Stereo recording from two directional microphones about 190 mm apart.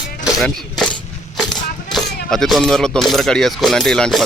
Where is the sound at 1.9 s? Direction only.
Centre (ahead or behind).